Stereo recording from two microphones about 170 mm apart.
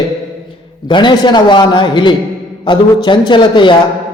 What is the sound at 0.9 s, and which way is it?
A man's voice, 25° left (ahead or behind).